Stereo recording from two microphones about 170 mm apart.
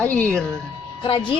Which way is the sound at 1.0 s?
30° left (ahead or behind).